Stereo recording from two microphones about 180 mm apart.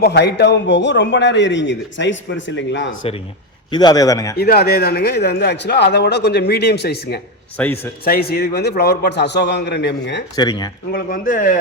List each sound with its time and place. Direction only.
0.0 s speech: 65° left (ahead or behind); by 3.0 s 90° left
3.7 s a man's voice: 25° left (ahead or behind)
4.4 s speech: 60° left (ahead or behind)
7.5 s speech: 10° left (ahead or behind)
8.0 s speech: 55° left (ahead or behind); by 10.2 s 75° left (ahead or behind)
10.3 s a man's voice: 20° left (ahead or behind)
10.9 s speech: 50° left (ahead or behind)